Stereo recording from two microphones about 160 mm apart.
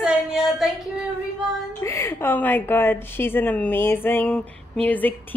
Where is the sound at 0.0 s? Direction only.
Centre (ahead or behind).